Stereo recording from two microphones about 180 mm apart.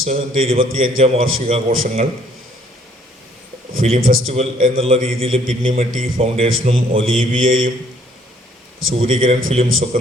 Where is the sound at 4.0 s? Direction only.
90° right.